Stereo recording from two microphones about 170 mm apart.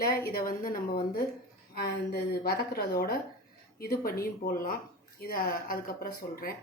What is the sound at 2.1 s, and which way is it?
Speech, 65° left (ahead or behind).